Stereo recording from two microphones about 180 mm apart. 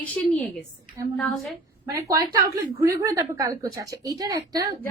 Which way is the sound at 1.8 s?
20° right (ahead or behind).